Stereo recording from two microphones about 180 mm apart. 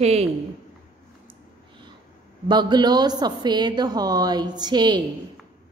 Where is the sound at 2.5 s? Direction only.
25° right (ahead or behind).